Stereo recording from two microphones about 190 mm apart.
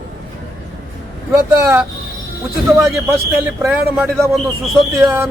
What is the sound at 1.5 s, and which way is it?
Speech, 15° right (ahead or behind).